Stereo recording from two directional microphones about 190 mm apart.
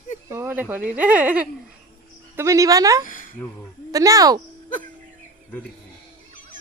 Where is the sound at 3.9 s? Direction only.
15° right (ahead or behind).